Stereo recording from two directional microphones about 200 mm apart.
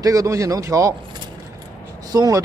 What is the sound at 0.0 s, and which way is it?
Speech, 15° right (ahead or behind).